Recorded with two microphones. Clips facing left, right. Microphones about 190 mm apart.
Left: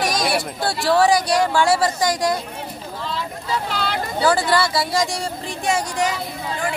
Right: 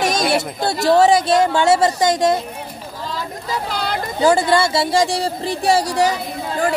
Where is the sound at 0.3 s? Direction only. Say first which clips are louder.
Right 3 dB; 20° right (ahead or behind).